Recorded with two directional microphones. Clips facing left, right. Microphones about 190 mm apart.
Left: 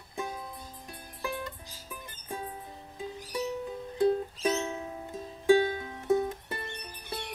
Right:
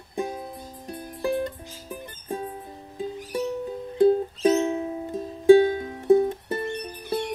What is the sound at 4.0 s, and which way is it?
Music, 30° right (ahead or behind).